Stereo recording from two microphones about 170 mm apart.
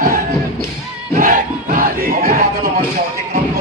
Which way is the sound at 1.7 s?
55° right (ahead or behind).